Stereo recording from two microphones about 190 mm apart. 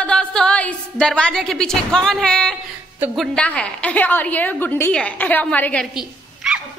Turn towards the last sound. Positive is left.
turn(degrees=-5)  # may be behind; listen again after turning